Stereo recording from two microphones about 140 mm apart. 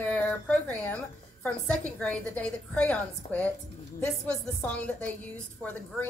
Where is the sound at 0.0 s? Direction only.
10° left (ahead or behind).